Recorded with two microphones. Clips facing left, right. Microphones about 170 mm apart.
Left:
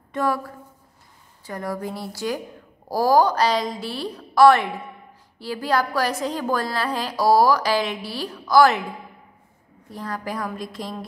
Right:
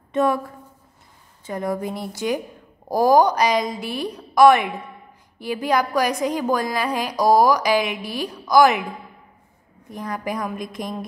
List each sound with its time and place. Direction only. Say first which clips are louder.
0.1 s a woman's voice: right 4 dB; 20° right (ahead or behind)
1.4 s a woman's voice: right 4 dB; 20° right (ahead or behind)
9.8 s a woman's voice: right 2 dB; 15° right (ahead or behind)